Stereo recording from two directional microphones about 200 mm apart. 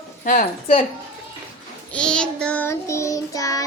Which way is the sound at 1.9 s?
5° left (ahead or behind).